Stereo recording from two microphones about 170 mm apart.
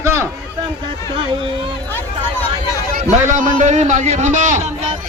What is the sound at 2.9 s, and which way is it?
A man's voice, 50° right (ahead or behind).